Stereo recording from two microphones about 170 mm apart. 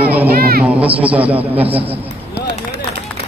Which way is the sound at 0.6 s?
10° right (ahead or behind).